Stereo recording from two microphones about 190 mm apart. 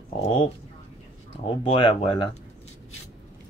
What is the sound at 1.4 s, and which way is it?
Speech, 30° left (ahead or behind).